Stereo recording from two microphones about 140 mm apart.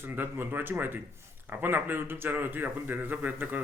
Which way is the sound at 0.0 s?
15° right (ahead or behind).